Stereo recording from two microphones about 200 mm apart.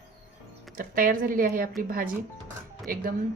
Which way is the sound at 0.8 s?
45° right (ahead or behind).